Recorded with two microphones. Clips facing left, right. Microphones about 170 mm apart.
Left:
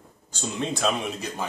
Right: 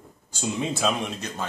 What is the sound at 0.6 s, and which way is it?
Speech, 5° right (ahead or behind).